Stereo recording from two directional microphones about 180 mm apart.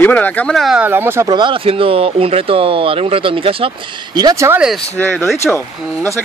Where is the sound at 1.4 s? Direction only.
30° right (ahead or behind).